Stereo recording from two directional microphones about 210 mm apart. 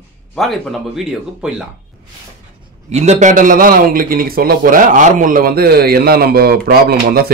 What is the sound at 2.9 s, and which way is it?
A man's voice, 30° right (ahead or behind).